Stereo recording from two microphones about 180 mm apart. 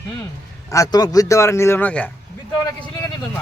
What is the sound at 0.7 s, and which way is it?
Speech, 20° left (ahead or behind).